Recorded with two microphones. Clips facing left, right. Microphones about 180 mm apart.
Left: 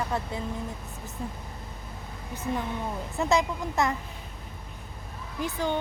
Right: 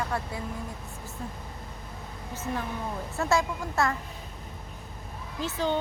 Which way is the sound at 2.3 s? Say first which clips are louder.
Left 2 dB; 15° left (ahead or behind).